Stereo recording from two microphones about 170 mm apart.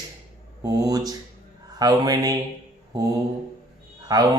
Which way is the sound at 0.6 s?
20° right (ahead or behind).